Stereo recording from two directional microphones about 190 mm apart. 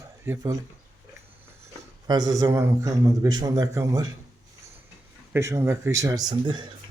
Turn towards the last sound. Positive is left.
turn(degrees=-25)  # may be behind; listen again after turning